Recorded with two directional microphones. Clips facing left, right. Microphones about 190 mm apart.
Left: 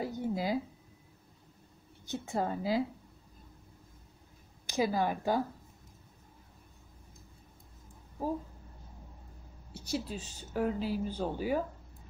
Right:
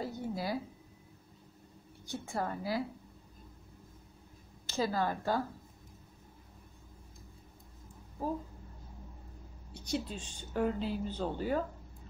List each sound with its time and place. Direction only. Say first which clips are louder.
0.0 s a sound: left 3 dB; 20° left (ahead or behind)
2.0 s a woman's voice: left 3 dB; 20° left (ahead or behind)
4.6 s speech: left 2 dB; 15° left (ahead or behind)
9.8 s speech: even; 5° left (ahead or behind)